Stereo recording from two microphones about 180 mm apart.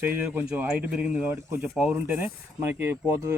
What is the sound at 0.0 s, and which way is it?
A man's voice, 10° right (ahead or behind).